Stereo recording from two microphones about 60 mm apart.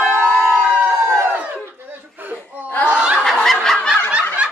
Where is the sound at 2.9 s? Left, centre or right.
Centre.